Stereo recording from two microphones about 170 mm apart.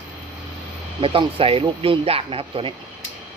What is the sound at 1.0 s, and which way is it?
Speech, 30° right (ahead or behind).